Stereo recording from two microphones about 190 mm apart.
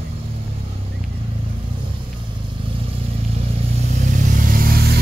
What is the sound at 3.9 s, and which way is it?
Vehicle, 40° right (ahead or behind).